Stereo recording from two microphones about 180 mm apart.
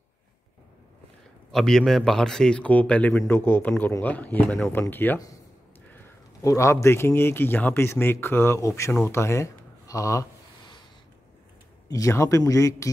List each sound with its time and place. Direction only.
1.5 s a man's voice: centre (ahead or behind)
6.4 s a man's voice: 15° left (ahead or behind)
11.9 s a man's voice: 15° left (ahead or behind)